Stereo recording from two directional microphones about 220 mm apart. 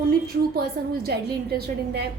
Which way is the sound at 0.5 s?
45° right (ahead or behind).